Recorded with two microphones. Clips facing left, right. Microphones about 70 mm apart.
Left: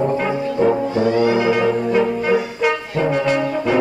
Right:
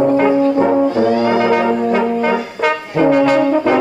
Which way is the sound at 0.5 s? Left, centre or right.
Right.